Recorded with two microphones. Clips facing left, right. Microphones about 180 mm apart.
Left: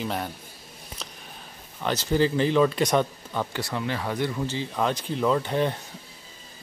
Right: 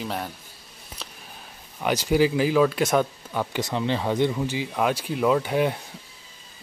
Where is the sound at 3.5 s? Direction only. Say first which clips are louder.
Right 4 dB; 20° right (ahead or behind).